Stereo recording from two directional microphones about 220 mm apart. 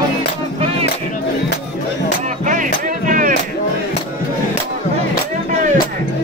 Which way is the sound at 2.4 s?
35° right (ahead or behind).